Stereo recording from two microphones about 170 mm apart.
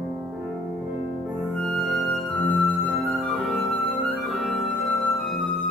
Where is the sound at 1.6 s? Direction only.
5° left (ahead or behind).